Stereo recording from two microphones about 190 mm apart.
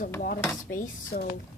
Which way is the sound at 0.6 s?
45° left (ahead or behind).